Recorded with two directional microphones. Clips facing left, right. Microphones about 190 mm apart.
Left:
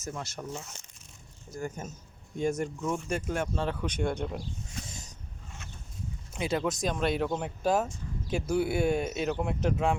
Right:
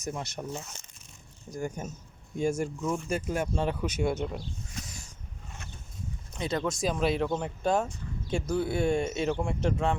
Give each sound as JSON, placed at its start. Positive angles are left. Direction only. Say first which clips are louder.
{"t": 0.0, "sound": "speech", "louder": "right 2 dB", "side_deg": -20}
{"t": 1.5, "sound": "speech", "louder": "right 2 dB", "side_deg": -15}
{"t": 4.9, "sound": "a sound", "louder": "left 1 dB", "side_deg": 20}
{"t": 6.3, "sound": "speech", "louder": "left 1 dB", "side_deg": 5}